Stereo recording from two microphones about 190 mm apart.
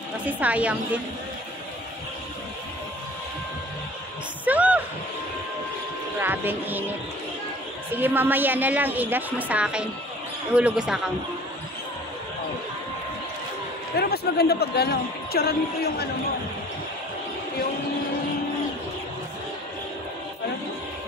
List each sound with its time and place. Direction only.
0.2 s a woman's voice: 10° right (ahead or behind)
4.5 s music: 10° right (ahead or behind)
6.1 s a woman's voice: 10° right (ahead or behind)
8.0 s a woman's voice: 10° right (ahead or behind)
13.9 s speech: 55° left (ahead or behind)